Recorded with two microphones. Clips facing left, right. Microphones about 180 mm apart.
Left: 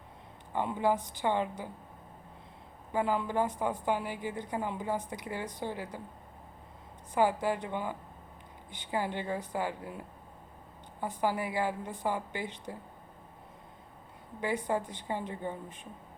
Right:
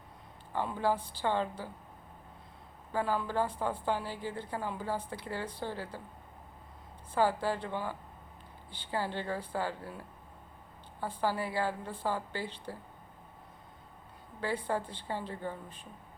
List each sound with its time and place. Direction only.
0.5 s a woman's voice: 20° left (ahead or behind)
2.9 s a woman's voice: 20° left (ahead or behind)
7.1 s a woman's voice: 20° left (ahead or behind)
14.4 s a woman's voice: 15° left (ahead or behind)